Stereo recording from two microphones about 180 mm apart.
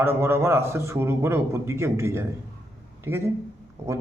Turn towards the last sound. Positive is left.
turn(degrees=-15)  # may be behind; listen again after turning